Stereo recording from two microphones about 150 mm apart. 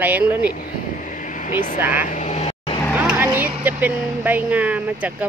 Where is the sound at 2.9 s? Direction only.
10° right (ahead or behind).